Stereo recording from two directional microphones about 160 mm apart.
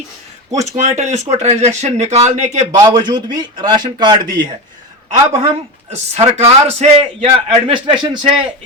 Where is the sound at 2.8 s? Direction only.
25° right (ahead or behind).